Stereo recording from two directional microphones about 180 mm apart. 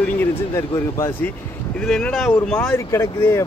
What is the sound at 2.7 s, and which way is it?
Speech, 15° left (ahead or behind).